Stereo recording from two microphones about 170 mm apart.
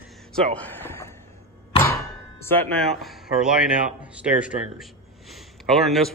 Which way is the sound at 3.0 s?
Centre (ahead or behind).